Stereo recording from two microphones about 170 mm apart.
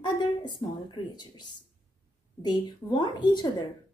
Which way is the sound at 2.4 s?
25° left (ahead or behind).